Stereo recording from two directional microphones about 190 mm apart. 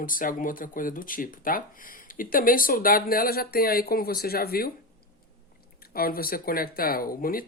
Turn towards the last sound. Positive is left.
turn(degrees=50)  # may be behind; listen again after turning